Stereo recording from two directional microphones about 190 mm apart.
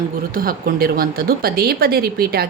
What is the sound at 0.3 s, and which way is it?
A woman's voice, 50° right (ahead or behind).